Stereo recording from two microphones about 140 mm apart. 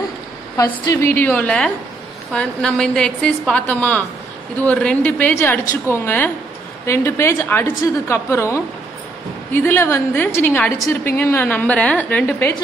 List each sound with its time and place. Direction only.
0.6 s a woman's voice: 25° left (ahead or behind)
1.1 s a woman's voice: 15° left (ahead or behind)